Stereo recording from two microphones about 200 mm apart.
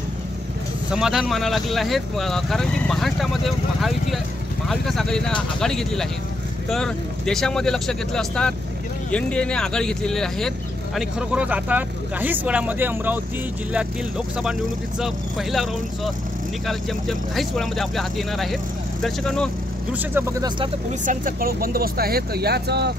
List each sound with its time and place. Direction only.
0.9 s speech: centre (ahead or behind)
19.9 s speech: 10° right (ahead or behind)
20.4 s speech: 25° right (ahead or behind)
21.0 s speech: 40° right (ahead or behind)